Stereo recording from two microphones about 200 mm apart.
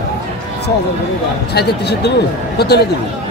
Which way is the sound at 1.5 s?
55° left (ahead or behind).